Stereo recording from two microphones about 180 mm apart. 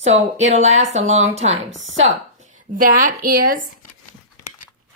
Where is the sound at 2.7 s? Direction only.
50° right (ahead or behind).